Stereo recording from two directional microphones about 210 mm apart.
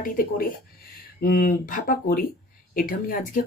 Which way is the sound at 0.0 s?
40° left (ahead or behind).